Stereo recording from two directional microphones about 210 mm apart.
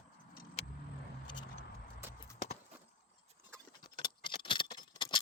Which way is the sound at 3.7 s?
20° left (ahead or behind).